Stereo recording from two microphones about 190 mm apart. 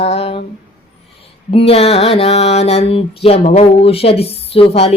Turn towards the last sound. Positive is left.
turn(degrees=30)  # may be behind; listen again after turning